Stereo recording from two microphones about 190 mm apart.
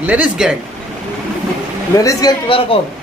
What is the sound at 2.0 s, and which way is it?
Speech, 20° left (ahead or behind).